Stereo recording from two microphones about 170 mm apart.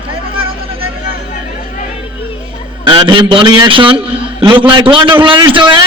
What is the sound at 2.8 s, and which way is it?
A man's voice, 30° right (ahead or behind).